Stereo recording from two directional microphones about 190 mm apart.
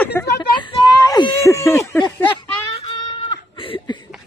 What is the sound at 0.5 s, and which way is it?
Speech, 25° left (ahead or behind).